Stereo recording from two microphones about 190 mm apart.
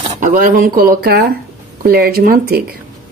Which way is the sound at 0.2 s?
45° right (ahead or behind).